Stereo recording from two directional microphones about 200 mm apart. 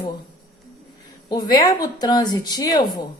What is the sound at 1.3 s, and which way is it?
A woman's voice, 20° left (ahead or behind).